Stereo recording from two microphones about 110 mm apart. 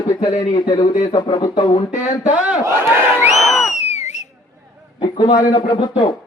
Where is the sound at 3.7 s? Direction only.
90° left.